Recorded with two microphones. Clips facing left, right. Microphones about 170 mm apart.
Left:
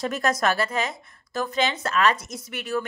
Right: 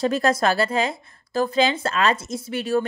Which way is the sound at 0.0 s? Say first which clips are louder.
Right 4 dB; 30° right (ahead or behind).